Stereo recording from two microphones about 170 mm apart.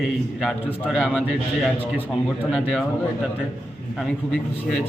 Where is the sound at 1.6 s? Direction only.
10° left (ahead or behind).